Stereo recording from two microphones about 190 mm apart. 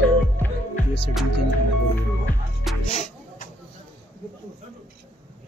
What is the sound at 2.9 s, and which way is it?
Music, 35° left (ahead or behind).